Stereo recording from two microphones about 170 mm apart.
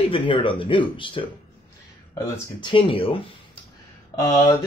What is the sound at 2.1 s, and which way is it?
Speech, 15° left (ahead or behind).